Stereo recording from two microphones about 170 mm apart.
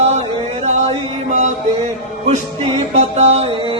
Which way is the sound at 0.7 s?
40° right (ahead or behind).